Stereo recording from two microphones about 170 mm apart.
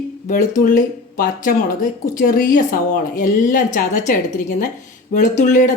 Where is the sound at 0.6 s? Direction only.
55° left (ahead or behind).